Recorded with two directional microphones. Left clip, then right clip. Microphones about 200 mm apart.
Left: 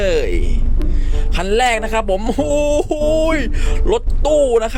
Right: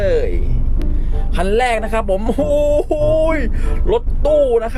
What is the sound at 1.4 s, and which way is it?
Speech, 10° left (ahead or behind).